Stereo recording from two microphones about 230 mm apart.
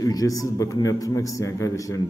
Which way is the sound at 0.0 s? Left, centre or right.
Centre.